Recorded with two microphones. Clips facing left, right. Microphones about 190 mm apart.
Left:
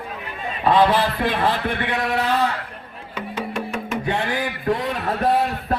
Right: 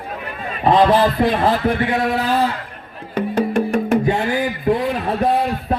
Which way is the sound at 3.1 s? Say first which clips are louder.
Right 10 dB; 55° right (ahead or behind).